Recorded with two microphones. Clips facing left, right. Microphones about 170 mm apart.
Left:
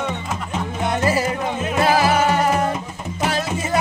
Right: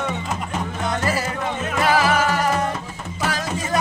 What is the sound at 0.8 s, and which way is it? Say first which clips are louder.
Music: left 4 dB; 20° left (ahead or behind).